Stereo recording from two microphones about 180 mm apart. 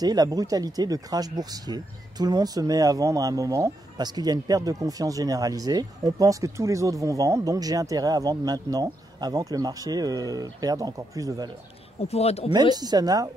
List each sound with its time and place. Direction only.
0.0 s speech: 20° right (ahead or behind)
12.0 s speech: 35° left (ahead or behind)
12.7 s speech: 20° right (ahead or behind)